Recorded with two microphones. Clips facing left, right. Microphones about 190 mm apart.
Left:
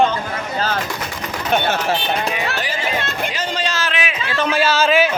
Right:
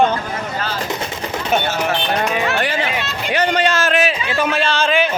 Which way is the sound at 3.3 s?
65° right (ahead or behind).